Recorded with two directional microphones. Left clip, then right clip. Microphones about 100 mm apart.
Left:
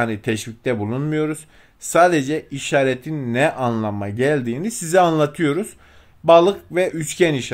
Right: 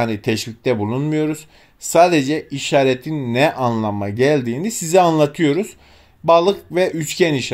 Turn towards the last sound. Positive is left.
turn(degrees=-20)  # may be behind; listen again after turning